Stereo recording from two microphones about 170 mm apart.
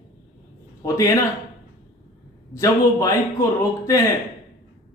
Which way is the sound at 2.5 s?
20° left (ahead or behind).